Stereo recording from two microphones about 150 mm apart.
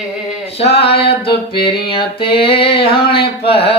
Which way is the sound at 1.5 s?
90° left.